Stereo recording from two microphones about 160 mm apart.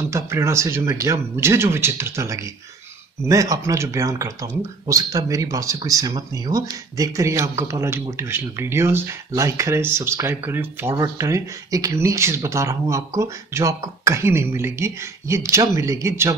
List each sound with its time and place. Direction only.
0.0 s speech: 20° right (ahead or behind)